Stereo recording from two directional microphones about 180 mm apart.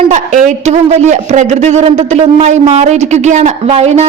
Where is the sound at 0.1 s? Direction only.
45° right (ahead or behind).